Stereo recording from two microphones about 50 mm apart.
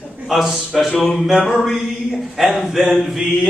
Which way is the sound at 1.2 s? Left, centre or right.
Centre.